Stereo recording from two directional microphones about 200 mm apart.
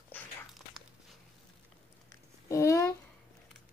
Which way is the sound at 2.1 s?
15° left (ahead or behind).